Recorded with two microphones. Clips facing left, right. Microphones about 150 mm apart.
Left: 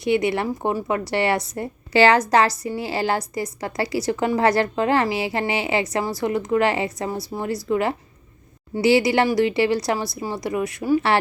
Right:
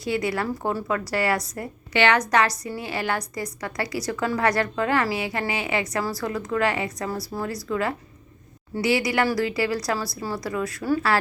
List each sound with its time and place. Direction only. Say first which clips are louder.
0.0 s a woman's voice: left 5 dB; 20° left (ahead or behind)